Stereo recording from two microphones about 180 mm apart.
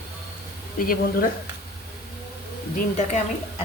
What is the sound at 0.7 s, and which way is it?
Speech, 55° left (ahead or behind).